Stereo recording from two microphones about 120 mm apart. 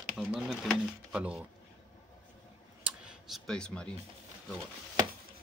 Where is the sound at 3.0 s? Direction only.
Centre (ahead or behind).